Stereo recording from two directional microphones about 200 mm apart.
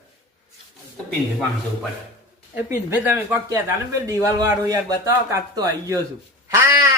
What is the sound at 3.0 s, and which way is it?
A man's voice, 10° right (ahead or behind).